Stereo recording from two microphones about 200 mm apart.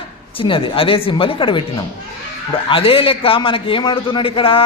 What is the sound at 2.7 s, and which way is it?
A man's voice, 25° left (ahead or behind).